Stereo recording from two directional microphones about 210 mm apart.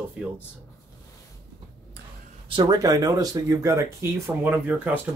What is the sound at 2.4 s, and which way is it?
Speech, 25° right (ahead or behind).